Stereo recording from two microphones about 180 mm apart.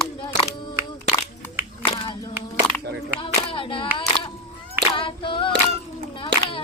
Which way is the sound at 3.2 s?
30° left (ahead or behind).